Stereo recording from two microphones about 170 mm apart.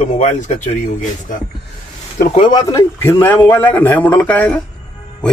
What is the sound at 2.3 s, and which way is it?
Speech, 25° left (ahead or behind).